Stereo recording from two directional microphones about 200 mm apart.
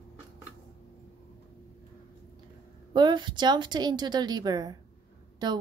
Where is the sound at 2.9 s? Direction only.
20° right (ahead or behind).